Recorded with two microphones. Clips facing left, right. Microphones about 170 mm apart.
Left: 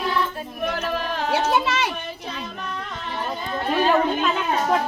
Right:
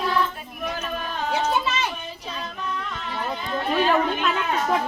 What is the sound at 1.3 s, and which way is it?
Children playing, 75° left (ahead or behind).